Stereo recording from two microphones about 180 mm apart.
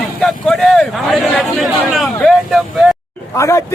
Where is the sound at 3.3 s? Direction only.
15° left (ahead or behind).